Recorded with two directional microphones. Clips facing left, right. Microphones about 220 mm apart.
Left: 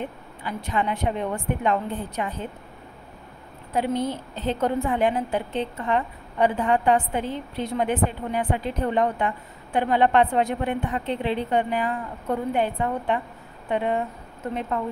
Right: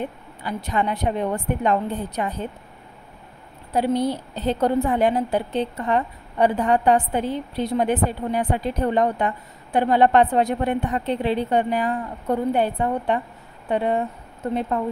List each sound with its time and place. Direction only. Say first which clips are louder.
0.4 s a woman's voice: right 2 dB; 40° right (ahead or behind)
3.7 s a woman's voice: right 4 dB; 35° right (ahead or behind)